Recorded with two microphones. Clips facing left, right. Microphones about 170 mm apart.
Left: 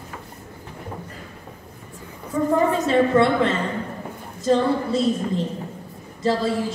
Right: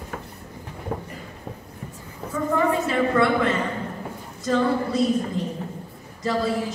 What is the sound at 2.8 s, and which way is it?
A woman's voice, 25° left (ahead or behind).